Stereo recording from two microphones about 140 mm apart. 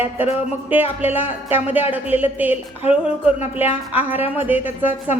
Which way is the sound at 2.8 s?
45° left (ahead or behind).